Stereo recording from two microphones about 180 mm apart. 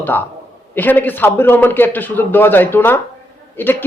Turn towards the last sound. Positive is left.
turn(degrees=10)  # may be behind; listen again after turning